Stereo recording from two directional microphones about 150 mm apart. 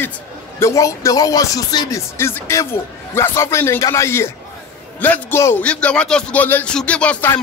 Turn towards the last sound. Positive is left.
turn(degrees=10)  # may be behind; listen again after turning